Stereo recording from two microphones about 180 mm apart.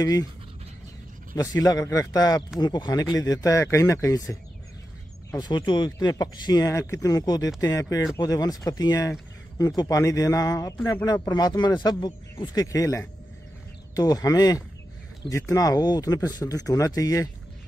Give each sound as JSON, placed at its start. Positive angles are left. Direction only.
{"t": 0.0, "sound": "a man's voice", "side_deg": 20}
{"t": 1.3, "sound": "a man's voice", "side_deg": 20}
{"t": 5.4, "sound": "a man's voice", "side_deg": 25}